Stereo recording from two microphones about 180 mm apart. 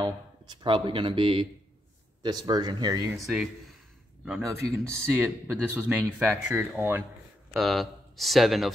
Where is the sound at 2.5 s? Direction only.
25° right (ahead or behind).